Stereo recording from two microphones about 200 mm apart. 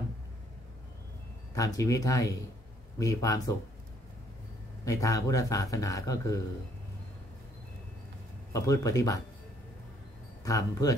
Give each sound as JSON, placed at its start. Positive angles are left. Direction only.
{"t": 1.5, "sound": "a man's voice", "side_deg": 15}
{"t": 4.8, "sound": "a man's voice", "side_deg": 15}
{"t": 8.5, "sound": "a man's voice", "side_deg": 15}
{"t": 10.4, "sound": "a man's voice", "side_deg": 15}